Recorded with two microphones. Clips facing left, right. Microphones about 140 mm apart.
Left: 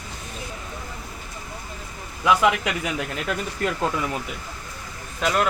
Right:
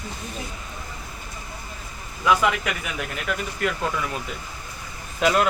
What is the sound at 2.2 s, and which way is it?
Speech, 15° left (ahead or behind).